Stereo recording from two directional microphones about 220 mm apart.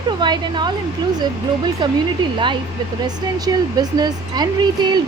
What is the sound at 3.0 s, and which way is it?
Speech, 15° right (ahead or behind).